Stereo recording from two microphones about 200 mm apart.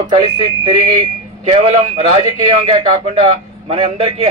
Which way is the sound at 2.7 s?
30° right (ahead or behind).